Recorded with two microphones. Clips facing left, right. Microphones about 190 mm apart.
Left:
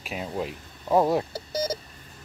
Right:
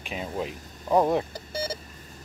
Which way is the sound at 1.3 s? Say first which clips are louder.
Left 4 dB; 40° left (ahead or behind).